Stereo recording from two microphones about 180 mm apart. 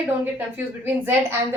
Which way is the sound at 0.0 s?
10° right (ahead or behind).